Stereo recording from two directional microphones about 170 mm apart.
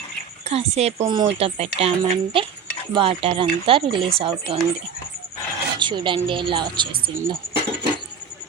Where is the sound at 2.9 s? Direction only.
35° right (ahead or behind).